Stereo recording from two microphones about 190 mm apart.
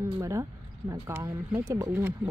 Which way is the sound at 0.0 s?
15° right (ahead or behind).